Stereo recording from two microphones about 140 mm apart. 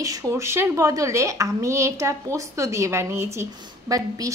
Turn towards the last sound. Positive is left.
turn(degrees=-25)  # may be behind; listen again after turning